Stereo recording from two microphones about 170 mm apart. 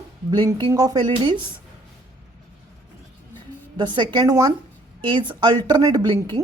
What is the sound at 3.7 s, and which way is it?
Speech, 25° right (ahead or behind).